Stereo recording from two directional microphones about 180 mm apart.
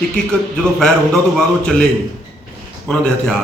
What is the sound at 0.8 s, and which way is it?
A man's voice, 5° left (ahead or behind).